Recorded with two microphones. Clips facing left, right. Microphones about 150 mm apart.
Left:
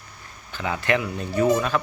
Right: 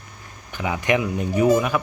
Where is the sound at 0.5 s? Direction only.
15° right (ahead or behind).